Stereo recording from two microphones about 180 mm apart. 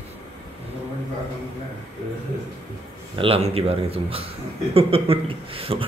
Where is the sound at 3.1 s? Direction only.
30° right (ahead or behind).